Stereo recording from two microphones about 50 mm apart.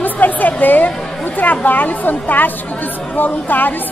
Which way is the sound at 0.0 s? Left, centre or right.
Left.